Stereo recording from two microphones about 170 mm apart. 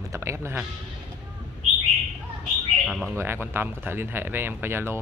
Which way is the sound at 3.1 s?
15° right (ahead or behind).